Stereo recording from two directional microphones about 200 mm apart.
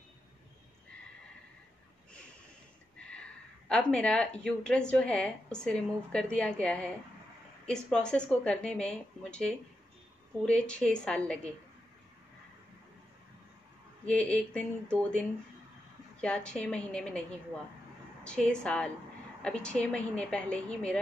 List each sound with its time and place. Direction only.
3.1 s speech: 5° left (ahead or behind)
14.0 s speech: 5° left (ahead or behind)
16.2 s speech: 5° left (ahead or behind)
18.2 s speech: 5° left (ahead or behind)